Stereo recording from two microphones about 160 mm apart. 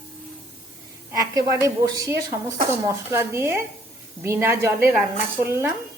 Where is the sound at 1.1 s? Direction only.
20° right (ahead or behind).